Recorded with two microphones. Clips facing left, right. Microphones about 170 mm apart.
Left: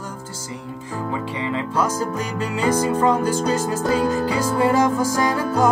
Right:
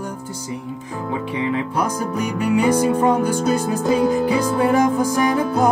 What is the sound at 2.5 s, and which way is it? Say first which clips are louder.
Music: right 3 dB; 10° right (ahead or behind).